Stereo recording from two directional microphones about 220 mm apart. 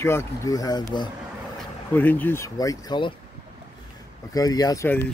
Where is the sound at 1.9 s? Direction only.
10° left (ahead or behind).